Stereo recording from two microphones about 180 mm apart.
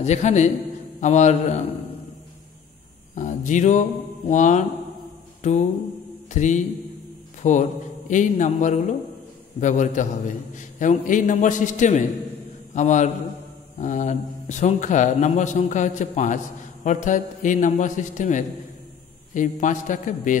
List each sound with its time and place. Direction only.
0.0 s a man's voice: 40° left (ahead or behind)
3.2 s speech: 45° left (ahead or behind)
5.4 s mantra: 40° left (ahead or behind)
6.3 s a man's voice: 40° left (ahead or behind)